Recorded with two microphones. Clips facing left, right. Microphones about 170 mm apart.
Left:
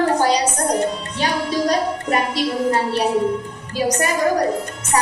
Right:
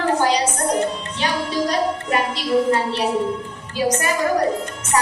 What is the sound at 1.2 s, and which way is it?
Music, 35° left (ahead or behind).